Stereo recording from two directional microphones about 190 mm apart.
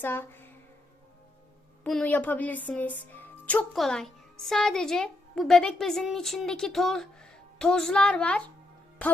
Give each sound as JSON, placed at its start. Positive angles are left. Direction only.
{"t": 0.0, "sound": "speech", "side_deg": 10}
{"t": 1.8, "sound": "speech", "side_deg": 5}